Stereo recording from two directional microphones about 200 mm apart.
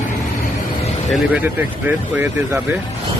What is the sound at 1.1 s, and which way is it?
Speech, 5° right (ahead or behind).